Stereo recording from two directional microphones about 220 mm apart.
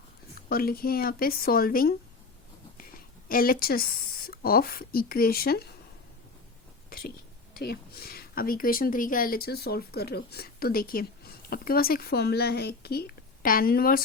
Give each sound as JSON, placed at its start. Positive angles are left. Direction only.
{"t": 0.4, "sound": "speech", "side_deg": 40}
{"t": 3.2, "sound": "speech", "side_deg": 40}
{"t": 7.5, "sound": "speech", "side_deg": 45}